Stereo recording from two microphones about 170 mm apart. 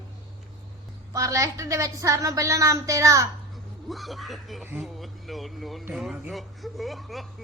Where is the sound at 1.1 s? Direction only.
20° right (ahead or behind).